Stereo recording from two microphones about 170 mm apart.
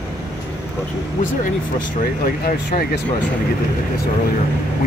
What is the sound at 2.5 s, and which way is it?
Speech, 60° left (ahead or behind).